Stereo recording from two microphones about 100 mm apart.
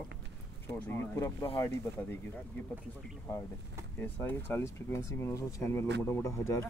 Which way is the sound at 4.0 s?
20° left (ahead or behind).